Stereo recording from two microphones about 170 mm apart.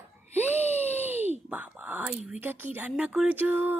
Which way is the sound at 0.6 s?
40° left (ahead or behind).